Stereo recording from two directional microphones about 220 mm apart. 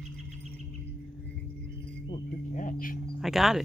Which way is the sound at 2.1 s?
35° left (ahead or behind).